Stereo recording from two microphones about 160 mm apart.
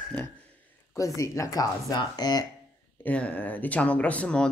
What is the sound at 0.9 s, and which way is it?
Speech, 20° left (ahead or behind).